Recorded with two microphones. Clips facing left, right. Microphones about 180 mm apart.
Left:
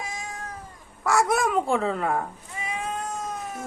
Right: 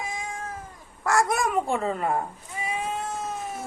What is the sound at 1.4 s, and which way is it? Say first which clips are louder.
Speech: left 2 dB; centre (ahead or behind).